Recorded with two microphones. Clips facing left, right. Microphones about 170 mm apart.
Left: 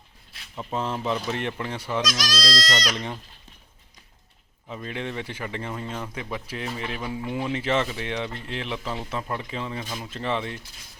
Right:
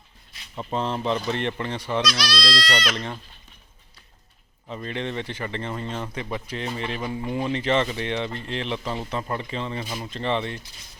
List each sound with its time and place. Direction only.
0.7 s speech: 5° left (ahead or behind)
2.0 s speech: 45° left (ahead or behind)
2.9 s speech: 10° left (ahead or behind)
4.7 s speech: 5° left (ahead or behind)